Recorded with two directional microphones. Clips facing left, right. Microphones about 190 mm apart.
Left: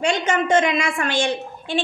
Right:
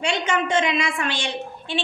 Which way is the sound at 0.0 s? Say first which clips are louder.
Left 3 dB; 45° left (ahead or behind).